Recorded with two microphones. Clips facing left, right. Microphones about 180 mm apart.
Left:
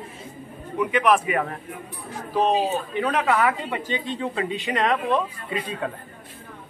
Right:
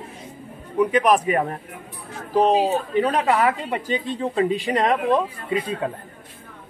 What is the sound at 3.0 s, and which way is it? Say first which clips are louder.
A woman's voice: right 2 dB; 35° right (ahead or behind).